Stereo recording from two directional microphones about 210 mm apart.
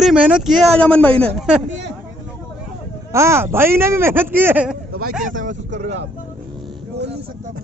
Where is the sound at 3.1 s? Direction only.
15° right (ahead or behind).